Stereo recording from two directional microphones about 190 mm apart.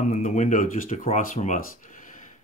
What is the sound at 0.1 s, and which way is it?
Speech, 40° left (ahead or behind).